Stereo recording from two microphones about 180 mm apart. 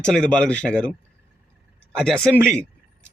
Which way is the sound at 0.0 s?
5° left (ahead or behind).